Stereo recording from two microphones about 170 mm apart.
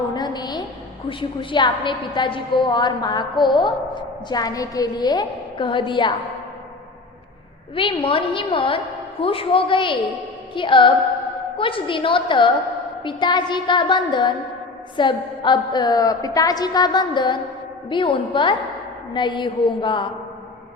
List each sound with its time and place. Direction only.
0.1 s a sound: 25° left (ahead or behind)
1.2 s a woman's voice: 30° left (ahead or behind)
7.8 s a woman's voice: 30° left (ahead or behind)